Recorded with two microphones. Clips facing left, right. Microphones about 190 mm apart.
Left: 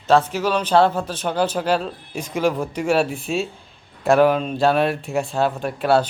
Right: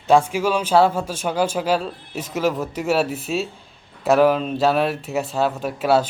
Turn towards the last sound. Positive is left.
turn(degrees=-5)  # may be behind; listen again after turning